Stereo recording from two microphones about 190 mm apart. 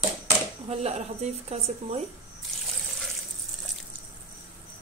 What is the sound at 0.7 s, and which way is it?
A woman's voice, 35° right (ahead or behind).